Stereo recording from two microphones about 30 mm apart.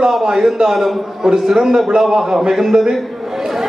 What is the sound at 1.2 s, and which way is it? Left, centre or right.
Speech, centre.